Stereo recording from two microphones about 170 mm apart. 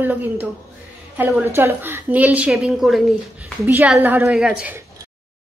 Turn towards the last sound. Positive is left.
turn(degrees=-5)  # may be behind; listen again after turning